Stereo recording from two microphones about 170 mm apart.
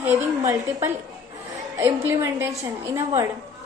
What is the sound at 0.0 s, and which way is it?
A woman's voice, 15° right (ahead or behind).